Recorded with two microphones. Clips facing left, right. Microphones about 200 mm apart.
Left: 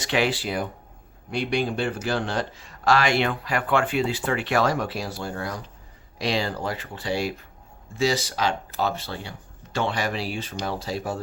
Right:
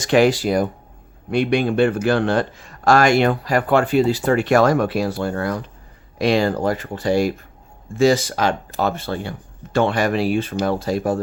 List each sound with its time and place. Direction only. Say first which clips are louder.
0.0 s a man's voice: right 9 dB; 45° right (ahead or behind)
1.3 s a man's voice: right 7 dB; 60° right (ahead or behind)